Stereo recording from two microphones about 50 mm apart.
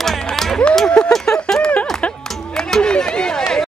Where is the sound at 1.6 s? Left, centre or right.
Left.